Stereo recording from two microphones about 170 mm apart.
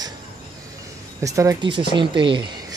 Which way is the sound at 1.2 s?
20° right (ahead or behind).